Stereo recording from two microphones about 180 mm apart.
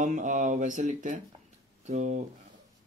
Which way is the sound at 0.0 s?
45° right (ahead or behind).